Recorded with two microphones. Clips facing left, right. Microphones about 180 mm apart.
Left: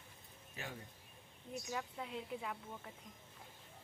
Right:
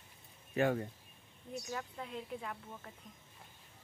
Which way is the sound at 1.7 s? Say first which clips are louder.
Even; 5° left (ahead or behind).